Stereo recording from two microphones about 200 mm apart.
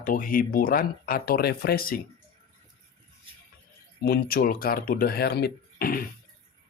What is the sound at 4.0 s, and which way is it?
Speech, 50° left (ahead or behind).